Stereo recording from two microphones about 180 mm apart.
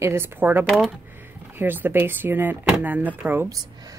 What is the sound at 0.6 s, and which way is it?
Speech, centre (ahead or behind).